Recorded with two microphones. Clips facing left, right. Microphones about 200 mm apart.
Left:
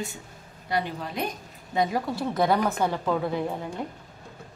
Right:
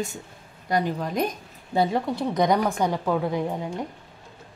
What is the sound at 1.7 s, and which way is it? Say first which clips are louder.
Speech: right 3 dB; 30° right (ahead or behind).